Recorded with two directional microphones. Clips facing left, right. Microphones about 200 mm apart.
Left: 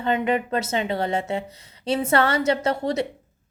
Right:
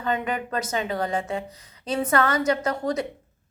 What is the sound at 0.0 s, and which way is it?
A woman's voice, 25° left (ahead or behind).